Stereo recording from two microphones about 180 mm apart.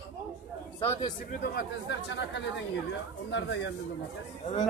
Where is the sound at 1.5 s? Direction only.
70° left (ahead or behind).